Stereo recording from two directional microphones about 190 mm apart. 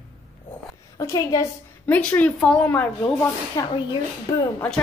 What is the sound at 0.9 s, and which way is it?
A woman's voice, 15° left (ahead or behind).